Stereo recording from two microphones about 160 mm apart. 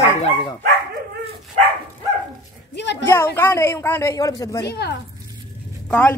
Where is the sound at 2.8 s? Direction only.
90° left.